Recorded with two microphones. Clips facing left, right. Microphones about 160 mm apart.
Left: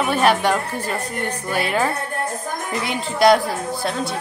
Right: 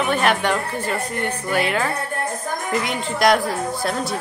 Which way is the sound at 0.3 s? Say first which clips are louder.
Left 2 dB; 10° left (ahead or behind).